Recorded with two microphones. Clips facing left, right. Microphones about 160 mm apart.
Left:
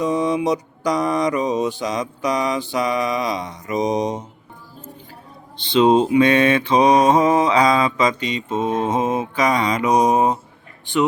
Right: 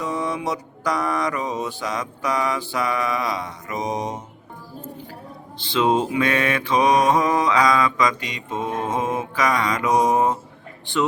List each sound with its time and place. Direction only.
0.0 s mantra: 20° left (ahead or behind)
5.5 s mantra: 20° left (ahead or behind)